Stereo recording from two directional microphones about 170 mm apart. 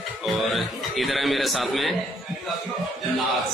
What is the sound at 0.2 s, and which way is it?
A man's voice, centre (ahead or behind).